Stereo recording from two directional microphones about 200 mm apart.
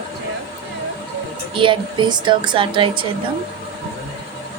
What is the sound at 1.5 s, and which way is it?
Speech, 25° right (ahead or behind).